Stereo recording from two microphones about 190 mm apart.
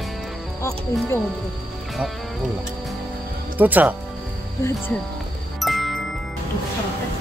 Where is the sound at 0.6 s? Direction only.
15° left (ahead or behind).